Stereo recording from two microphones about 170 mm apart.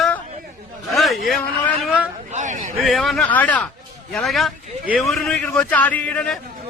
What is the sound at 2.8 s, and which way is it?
A man's voice, centre (ahead or behind).